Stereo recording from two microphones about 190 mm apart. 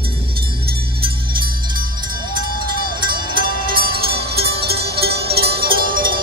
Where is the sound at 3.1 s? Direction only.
50° right (ahead or behind).